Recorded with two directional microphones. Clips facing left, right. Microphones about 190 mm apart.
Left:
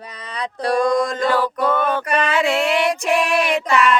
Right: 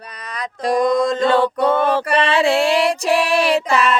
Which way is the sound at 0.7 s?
20° right (ahead or behind).